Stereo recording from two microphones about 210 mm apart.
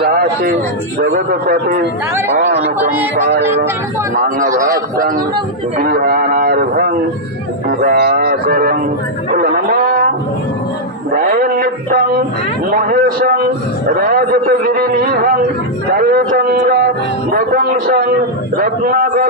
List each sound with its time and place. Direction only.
0.0 s a man's voice: 50° right (ahead or behind)
4.1 s a man's voice: 40° right (ahead or behind)
9.3 s cattle: 50° right (ahead or behind)
11.1 s a man's voice: 45° right (ahead or behind)